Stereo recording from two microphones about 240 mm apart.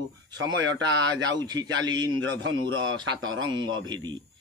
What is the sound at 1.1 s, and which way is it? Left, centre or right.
Speech, centre.